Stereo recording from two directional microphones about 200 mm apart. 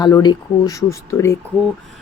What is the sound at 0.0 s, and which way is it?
Speech, 20° left (ahead or behind).